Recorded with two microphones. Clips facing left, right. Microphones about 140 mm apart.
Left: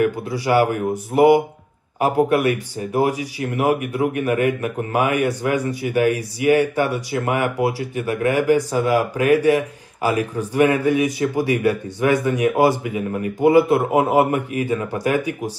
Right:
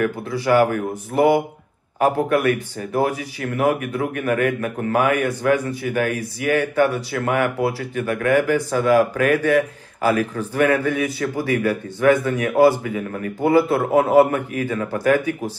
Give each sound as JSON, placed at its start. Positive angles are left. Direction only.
{"t": 0.0, "sound": "speech", "side_deg": 15}